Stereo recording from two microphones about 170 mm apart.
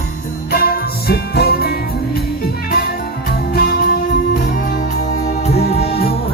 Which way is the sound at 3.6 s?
65° left (ahead or behind).